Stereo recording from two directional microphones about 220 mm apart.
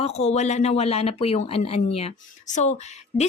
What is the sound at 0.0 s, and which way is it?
Speech, 30° left (ahead or behind).